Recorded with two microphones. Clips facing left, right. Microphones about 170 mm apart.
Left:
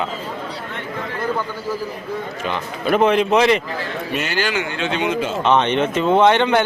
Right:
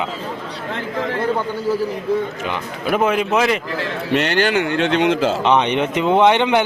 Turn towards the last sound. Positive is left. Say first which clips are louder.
# even
turn(degrees=-15)  # may be behind; listen again after turning